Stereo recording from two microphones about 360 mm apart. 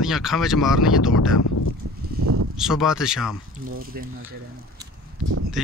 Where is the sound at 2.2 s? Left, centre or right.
Right.